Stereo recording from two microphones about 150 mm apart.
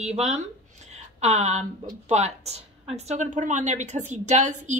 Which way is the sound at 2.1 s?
45° right (ahead or behind).